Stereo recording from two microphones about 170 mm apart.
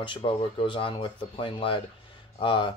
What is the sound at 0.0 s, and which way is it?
Speech, 30° left (ahead or behind).